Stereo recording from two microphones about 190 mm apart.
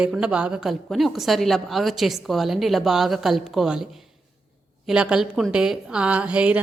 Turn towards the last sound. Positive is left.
turn(degrees=-5)  # may be behind; listen again after turning